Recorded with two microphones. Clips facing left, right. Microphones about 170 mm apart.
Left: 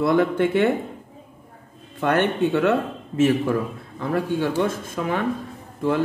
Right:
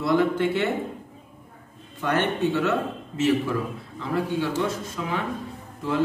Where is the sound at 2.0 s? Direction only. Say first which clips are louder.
Left 4 dB; 60° left (ahead or behind).